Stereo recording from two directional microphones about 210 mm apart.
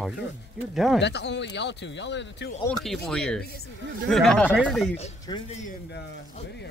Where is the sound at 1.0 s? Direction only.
55° left (ahead or behind).